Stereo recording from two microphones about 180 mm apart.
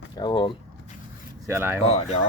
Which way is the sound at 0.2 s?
25° left (ahead or behind).